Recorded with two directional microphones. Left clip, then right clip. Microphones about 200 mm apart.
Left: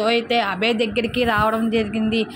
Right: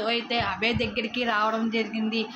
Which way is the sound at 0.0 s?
35° left (ahead or behind).